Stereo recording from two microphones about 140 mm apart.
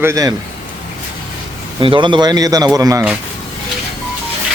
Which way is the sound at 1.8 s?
35° right (ahead or behind).